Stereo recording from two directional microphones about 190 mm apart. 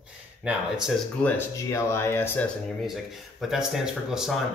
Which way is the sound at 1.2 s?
15° left (ahead or behind).